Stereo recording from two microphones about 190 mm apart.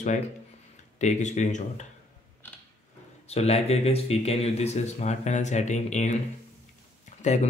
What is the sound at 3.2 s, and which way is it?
Speech, 35° left (ahead or behind).